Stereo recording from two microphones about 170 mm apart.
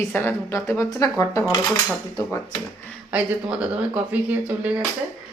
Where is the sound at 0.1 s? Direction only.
15° left (ahead or behind).